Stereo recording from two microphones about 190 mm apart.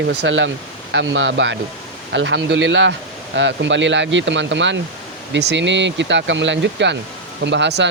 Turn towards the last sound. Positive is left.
turn(degrees=-65)  # may be behind; listen again after turning